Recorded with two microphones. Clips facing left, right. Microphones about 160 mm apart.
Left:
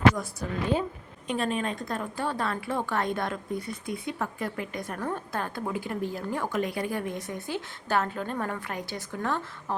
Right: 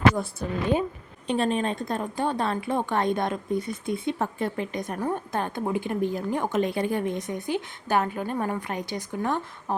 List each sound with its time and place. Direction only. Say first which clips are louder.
0.2 s a woman's voice: right 3 dB; 25° right (ahead or behind)